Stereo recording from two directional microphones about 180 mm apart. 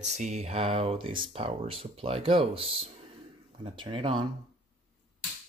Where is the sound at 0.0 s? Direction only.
40° right (ahead or behind).